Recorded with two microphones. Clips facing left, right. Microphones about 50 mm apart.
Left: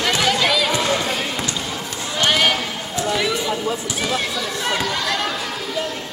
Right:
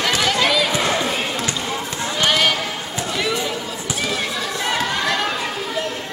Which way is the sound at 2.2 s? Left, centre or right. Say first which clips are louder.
Left 1 dB; centre.